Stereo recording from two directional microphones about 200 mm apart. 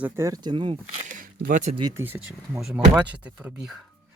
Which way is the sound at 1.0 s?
40° right (ahead or behind).